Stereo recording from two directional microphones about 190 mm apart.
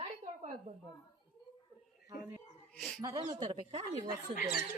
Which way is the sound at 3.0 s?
20° right (ahead or behind).